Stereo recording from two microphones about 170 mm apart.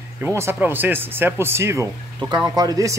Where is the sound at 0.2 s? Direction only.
15° right (ahead or behind).